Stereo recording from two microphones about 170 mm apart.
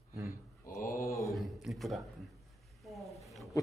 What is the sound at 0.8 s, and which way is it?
Mantra, 55° left (ahead or behind).